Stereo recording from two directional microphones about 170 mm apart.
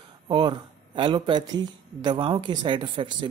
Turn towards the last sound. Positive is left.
turn(degrees=-30)  # may be behind; listen again after turning